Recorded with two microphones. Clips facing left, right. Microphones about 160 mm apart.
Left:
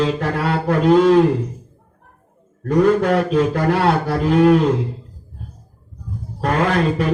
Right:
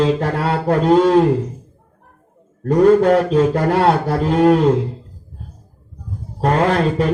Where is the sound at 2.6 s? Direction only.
30° right (ahead or behind).